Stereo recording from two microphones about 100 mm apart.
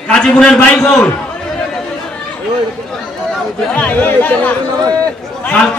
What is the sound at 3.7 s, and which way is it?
Speech, 15° left (ahead or behind).